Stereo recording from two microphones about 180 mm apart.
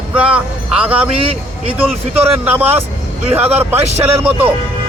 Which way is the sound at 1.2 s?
30° right (ahead or behind).